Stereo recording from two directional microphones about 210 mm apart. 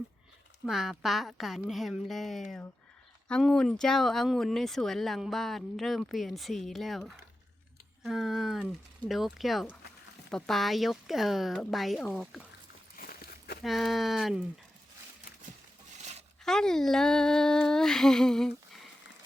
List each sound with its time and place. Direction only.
0.6 s speech: centre (ahead or behind)
13.0 s walk: 45° left (ahead or behind)
13.6 s speech: centre (ahead or behind)
16.0 s a sound: 30° right (ahead or behind)
16.4 s speech: 5° left (ahead or behind)